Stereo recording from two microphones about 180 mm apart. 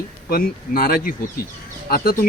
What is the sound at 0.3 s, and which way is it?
Speech, 55° left (ahead or behind).